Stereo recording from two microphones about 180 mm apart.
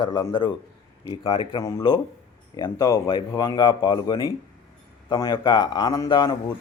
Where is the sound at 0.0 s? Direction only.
25° left (ahead or behind).